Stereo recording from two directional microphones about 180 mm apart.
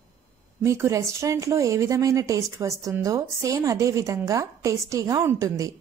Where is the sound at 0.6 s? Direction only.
15° right (ahead or behind).